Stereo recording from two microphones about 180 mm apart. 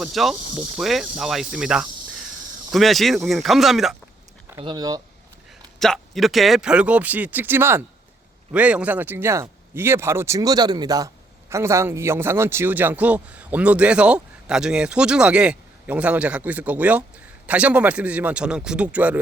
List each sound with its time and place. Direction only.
0.0 s speech: centre (ahead or behind)
4.6 s speech: 20° right (ahead or behind)
5.8 s speech: centre (ahead or behind)